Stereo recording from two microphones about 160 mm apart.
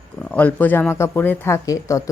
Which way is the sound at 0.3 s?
10° left (ahead or behind).